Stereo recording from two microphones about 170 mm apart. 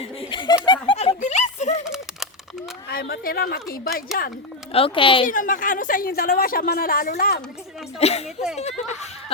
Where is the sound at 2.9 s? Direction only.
65° left (ahead or behind).